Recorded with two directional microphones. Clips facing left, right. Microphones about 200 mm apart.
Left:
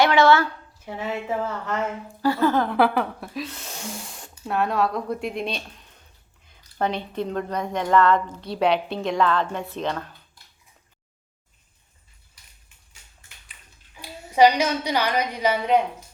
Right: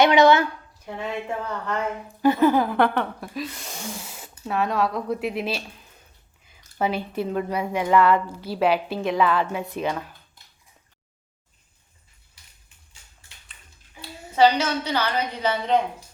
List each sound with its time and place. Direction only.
0.0 s a woman's voice: 20° right (ahead or behind)
0.9 s speech: 5° left (ahead or behind)
2.2 s speech: 15° right (ahead or behind)
2.6 s speech: centre (ahead or behind)
12.3 s a sound: 30° right (ahead or behind)
14.0 s a woman's voice: 15° left (ahead or behind)